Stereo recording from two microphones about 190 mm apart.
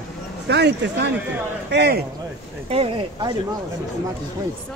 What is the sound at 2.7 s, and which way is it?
Speech, 30° right (ahead or behind).